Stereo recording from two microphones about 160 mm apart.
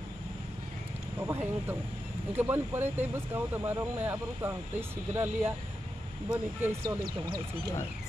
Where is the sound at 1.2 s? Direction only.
10° right (ahead or behind).